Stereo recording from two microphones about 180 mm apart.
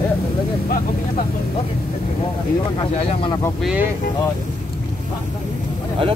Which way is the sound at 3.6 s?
10° right (ahead or behind).